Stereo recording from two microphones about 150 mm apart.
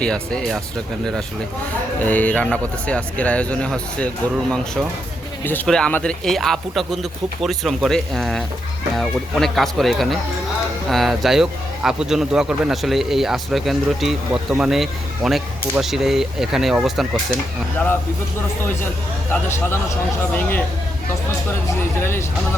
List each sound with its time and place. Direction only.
0.0 s a man's voice: 5° left (ahead or behind)
2.0 s a man's voice: 10° left (ahead or behind)
19.3 s speech: 15° left (ahead or behind)